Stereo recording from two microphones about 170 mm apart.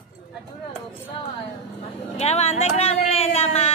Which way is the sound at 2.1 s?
40° left (ahead or behind).